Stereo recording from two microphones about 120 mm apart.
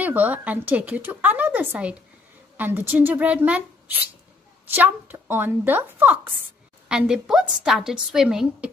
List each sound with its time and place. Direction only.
0.0 s a woman's voice: 15° right (ahead or behind)